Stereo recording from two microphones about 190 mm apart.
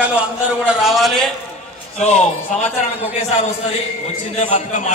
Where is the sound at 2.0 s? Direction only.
35° left (ahead or behind).